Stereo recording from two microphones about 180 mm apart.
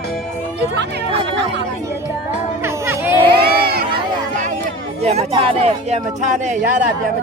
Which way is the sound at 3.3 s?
60° right (ahead or behind).